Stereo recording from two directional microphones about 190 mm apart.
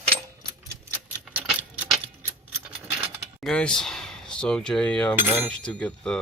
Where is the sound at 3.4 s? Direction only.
5° left (ahead or behind).